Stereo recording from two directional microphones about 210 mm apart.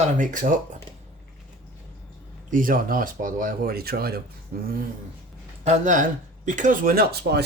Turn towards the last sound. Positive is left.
turn(degrees=-50)  # may be behind; listen again after turning